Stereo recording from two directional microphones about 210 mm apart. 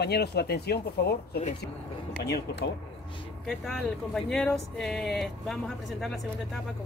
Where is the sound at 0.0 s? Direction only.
50° left (ahead or behind).